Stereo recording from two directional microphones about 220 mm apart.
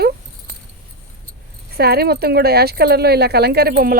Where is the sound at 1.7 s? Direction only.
45° right (ahead or behind).